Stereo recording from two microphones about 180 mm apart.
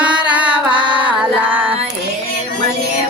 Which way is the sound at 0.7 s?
25° right (ahead or behind).